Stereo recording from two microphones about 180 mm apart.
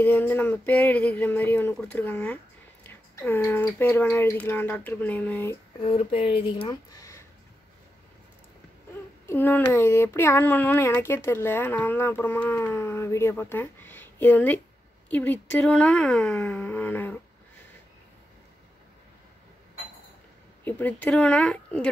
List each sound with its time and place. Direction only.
0.0 s speech: 10° left (ahead or behind)
5.8 s speech: 35° left (ahead or behind); by 7.2 s 20° left (ahead or behind)
9.2 s a woman's voice: 10° left (ahead or behind)
20.6 s speech: 10° left (ahead or behind)